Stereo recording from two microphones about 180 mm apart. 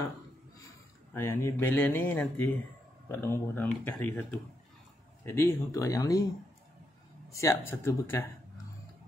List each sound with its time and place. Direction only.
1.1 s speech: 15° left (ahead or behind)
7.2 s speech: 15° left (ahead or behind)